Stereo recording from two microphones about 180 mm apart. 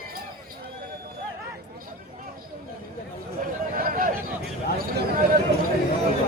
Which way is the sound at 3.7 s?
50° right (ahead or behind).